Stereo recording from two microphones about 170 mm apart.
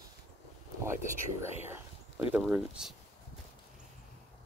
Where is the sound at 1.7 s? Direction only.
10° right (ahead or behind).